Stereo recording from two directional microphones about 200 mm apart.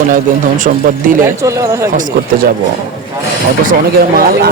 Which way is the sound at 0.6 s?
45° right (ahead or behind).